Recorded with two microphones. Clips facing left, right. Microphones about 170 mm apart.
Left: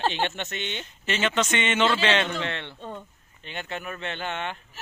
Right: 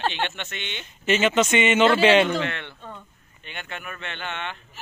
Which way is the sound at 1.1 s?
10° right (ahead or behind).